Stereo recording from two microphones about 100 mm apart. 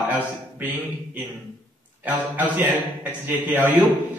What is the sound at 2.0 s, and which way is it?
A man's voice, 15° right (ahead or behind).